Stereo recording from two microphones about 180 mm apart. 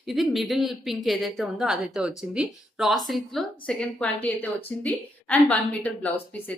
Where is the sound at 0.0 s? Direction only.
Centre (ahead or behind).